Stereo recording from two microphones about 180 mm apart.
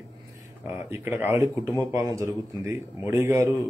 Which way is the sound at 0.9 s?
10° right (ahead or behind).